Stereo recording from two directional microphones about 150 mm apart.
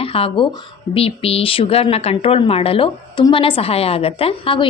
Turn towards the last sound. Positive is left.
turn(degrees=40)  # may be behind; listen again after turning